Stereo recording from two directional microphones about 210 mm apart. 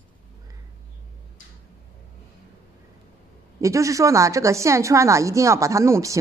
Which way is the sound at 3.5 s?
15° right (ahead or behind).